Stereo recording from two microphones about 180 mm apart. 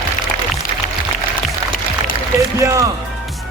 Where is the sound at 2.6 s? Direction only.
15° right (ahead or behind).